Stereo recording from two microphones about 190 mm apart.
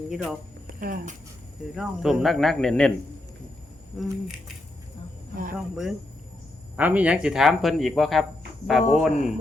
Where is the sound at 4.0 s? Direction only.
Centre (ahead or behind).